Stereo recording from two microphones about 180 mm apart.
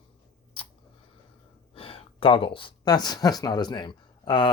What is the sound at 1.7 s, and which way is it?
Speech, 30° left (ahead or behind).